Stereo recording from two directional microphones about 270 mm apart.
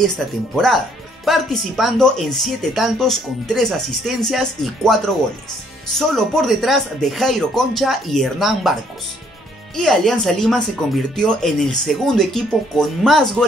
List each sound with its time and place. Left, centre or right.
1.2 s speech: centre
9.8 s speech: centre